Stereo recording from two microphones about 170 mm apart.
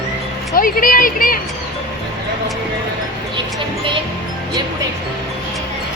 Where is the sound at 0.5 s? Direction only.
55° left (ahead or behind).